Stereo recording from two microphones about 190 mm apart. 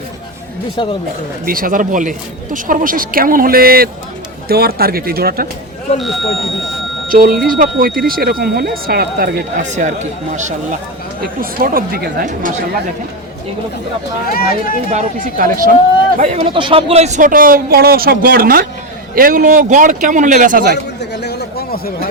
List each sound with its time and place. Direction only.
0.8 s speech: 25° left (ahead or behind)
1.5 s speech: 45° right (ahead or behind)
7.1 s speech: 50° right (ahead or behind)
14.3 s speech: 50° left (ahead or behind)
14.8 s speech: 40° right (ahead or behind)
16.1 s speech: 35° right (ahead or behind)
21.0 s a sound: 60° left (ahead or behind)